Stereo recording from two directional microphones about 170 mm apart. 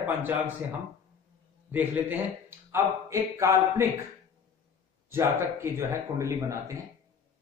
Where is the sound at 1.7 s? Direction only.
10° right (ahead or behind).